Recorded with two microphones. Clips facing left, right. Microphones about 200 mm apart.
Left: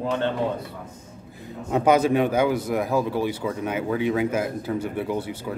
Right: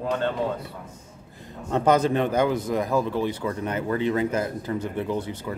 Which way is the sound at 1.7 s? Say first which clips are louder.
Left 2 dB; 10° left (ahead or behind).